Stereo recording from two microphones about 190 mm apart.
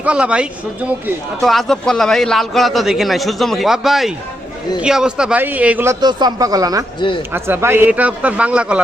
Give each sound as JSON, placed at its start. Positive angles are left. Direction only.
{"t": 0.0, "sound": "a man's voice", "side_deg": -5}